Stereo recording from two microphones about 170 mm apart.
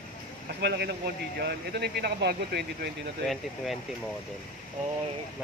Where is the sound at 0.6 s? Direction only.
80° right.